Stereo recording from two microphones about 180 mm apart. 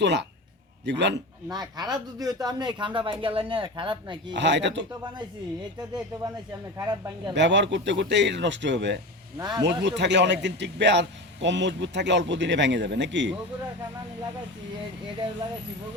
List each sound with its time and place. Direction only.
0.0 s speech: 75° right (ahead or behind)
1.5 s speech: 20° right (ahead or behind)
4.4 s a man's voice: 85° right
5.9 s speech: 20° right (ahead or behind)
7.3 s a man's voice: 80° right
9.4 s speech: 20° right (ahead or behind)
9.6 s a man's voice: 75° right (ahead or behind)